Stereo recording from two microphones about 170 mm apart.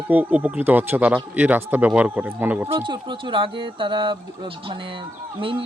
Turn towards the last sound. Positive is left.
turn(degrees=-30)  # may be behind; listen again after turning